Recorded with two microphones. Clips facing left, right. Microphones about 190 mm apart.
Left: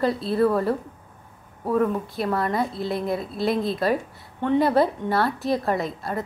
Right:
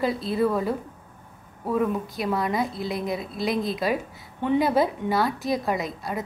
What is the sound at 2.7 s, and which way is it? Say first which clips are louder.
Speech: left 2 dB; 30° left (ahead or behind).